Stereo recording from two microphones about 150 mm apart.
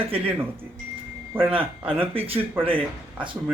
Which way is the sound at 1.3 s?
15° right (ahead or behind).